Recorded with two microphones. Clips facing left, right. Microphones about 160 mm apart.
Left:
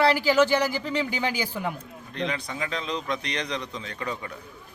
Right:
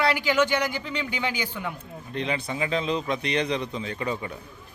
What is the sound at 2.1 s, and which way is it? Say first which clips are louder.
A man's voice: right 2 dB; 10° right (ahead or behind).